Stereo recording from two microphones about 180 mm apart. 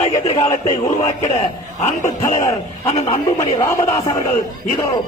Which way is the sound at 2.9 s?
30° left (ahead or behind).